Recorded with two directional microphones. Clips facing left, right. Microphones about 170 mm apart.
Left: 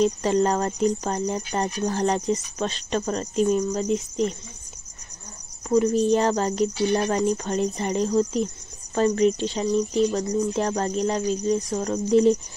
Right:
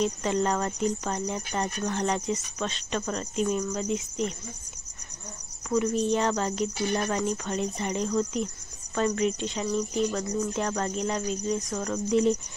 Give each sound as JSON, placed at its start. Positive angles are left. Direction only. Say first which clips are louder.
{"t": 0.0, "sound": "speech", "louder": "left 6 dB", "side_deg": 35}
{"t": 5.7, "sound": "speech", "louder": "left 6 dB", "side_deg": 35}